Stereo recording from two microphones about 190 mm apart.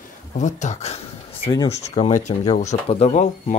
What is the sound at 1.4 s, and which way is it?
Speech, 20° left (ahead or behind).